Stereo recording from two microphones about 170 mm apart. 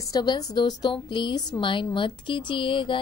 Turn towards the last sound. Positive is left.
turn(degrees=30)  # may be behind; listen again after turning